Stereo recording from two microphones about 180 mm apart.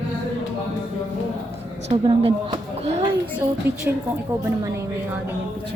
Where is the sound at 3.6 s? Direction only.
10° right (ahead or behind).